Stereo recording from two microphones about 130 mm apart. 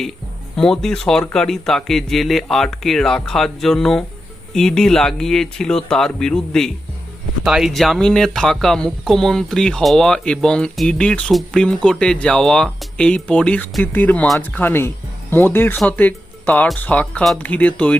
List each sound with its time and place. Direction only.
0.5 s speech: 5° left (ahead or behind)